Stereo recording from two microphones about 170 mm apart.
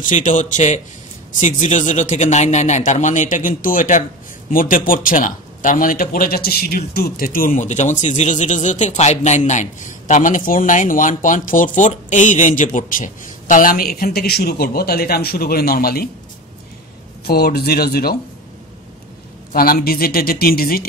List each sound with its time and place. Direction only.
0.0 s speech: 50° left (ahead or behind); by 16.1 s 65° left (ahead or behind)
17.2 s speech: 65° left (ahead or behind)
19.5 s speech: 60° left (ahead or behind)